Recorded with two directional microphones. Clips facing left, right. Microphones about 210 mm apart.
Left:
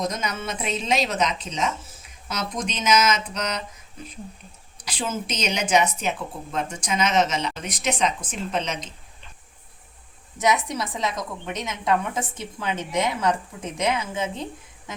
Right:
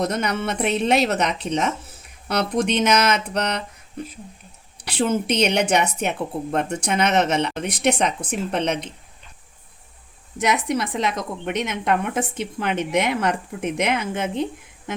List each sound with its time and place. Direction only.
0.0 s a woman's voice: 65° right (ahead or behind)
10.3 s a woman's voice: 60° right (ahead or behind)